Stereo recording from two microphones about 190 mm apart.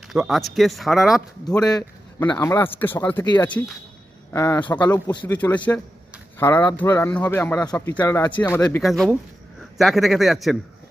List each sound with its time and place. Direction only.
0.1 s speech: centre (ahead or behind)
1.6 s speech: 20° left (ahead or behind)
8.8 s speech: centre (ahead or behind)